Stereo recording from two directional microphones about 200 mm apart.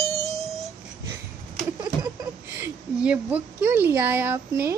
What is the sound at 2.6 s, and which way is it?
Speech, 5° right (ahead or behind).